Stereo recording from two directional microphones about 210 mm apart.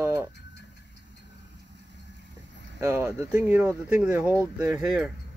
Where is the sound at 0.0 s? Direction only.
10° right (ahead or behind).